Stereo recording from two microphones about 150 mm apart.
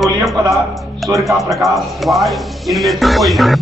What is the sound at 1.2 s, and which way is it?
Speech, centre (ahead or behind).